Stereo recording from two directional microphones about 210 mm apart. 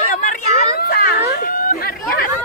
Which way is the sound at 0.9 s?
45° left (ahead or behind).